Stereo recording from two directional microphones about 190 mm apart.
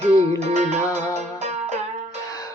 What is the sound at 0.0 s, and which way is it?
Music, 35° right (ahead or behind).